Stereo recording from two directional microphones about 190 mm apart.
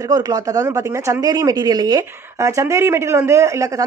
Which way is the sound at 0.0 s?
20° right (ahead or behind).